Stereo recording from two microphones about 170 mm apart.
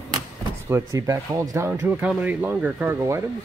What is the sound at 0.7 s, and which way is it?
Speech, 20° right (ahead or behind).